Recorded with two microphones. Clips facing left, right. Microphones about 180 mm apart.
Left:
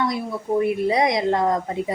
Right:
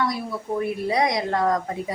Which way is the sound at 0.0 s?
20° left (ahead or behind).